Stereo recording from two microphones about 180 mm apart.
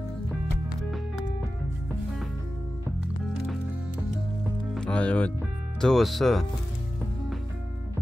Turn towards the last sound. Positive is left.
turn(degrees=0)  # may be behind; listen again after turning